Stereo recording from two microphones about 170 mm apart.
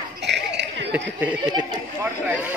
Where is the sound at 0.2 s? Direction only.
90° right.